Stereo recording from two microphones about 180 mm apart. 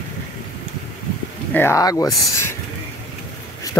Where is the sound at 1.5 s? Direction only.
15° left (ahead or behind).